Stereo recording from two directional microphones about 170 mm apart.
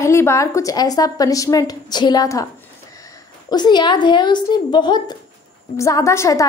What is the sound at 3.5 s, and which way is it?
A woman's voice, 25° left (ahead or behind).